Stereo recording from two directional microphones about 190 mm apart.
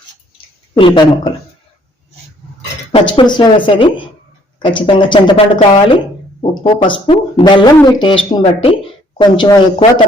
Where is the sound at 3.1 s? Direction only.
25° left (ahead or behind).